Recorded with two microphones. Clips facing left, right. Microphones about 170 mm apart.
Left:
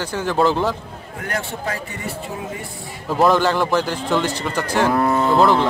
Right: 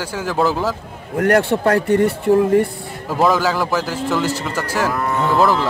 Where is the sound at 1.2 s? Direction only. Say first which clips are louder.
Right 12 dB; 65° right (ahead or behind).